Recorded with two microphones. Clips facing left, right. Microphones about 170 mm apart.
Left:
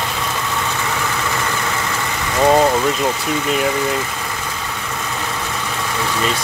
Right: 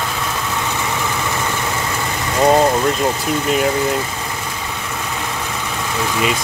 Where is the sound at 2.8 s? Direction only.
Centre (ahead or behind).